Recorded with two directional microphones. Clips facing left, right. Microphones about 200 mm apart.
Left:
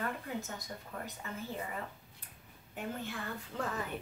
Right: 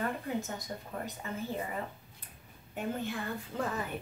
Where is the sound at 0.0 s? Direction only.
25° right (ahead or behind).